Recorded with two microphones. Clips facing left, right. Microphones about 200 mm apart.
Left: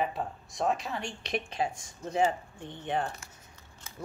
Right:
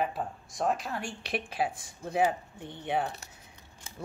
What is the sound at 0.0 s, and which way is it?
A woman's voice, centre (ahead or behind).